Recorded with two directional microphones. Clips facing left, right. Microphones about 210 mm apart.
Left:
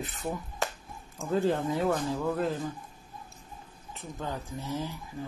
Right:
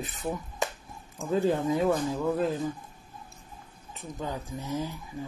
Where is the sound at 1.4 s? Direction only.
15° right (ahead or behind).